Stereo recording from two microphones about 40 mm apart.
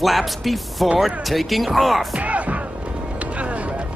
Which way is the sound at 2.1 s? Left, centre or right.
Right.